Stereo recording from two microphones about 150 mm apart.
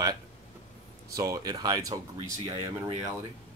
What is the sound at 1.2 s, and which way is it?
Speech, 20° right (ahead or behind).